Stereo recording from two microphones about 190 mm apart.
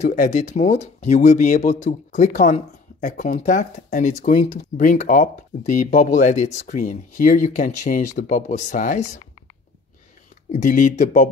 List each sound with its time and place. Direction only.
0.0 s speech: 40° left (ahead or behind)
10.5 s speech: 40° left (ahead or behind)